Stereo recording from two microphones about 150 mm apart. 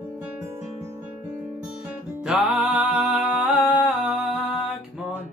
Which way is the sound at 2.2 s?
5° right (ahead or behind).